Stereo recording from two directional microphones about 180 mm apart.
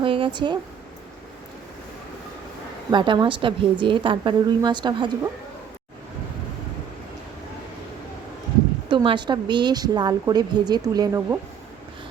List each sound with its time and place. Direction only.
0.0 s speech: 30° right (ahead or behind)
2.9 s a woman's voice: 25° right (ahead or behind)
8.9 s a woman's voice: 25° right (ahead or behind)